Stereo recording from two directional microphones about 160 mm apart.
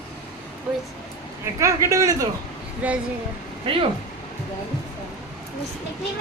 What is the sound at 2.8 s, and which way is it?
Speech, 10° right (ahead or behind).